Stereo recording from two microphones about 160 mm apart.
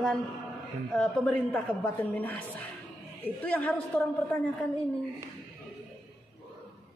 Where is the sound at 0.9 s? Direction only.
5° left (ahead or behind).